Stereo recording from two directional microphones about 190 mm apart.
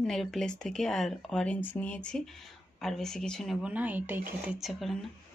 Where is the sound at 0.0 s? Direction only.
Centre (ahead or behind).